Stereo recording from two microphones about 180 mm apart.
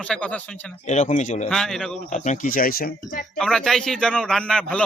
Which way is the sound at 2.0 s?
40° left (ahead or behind).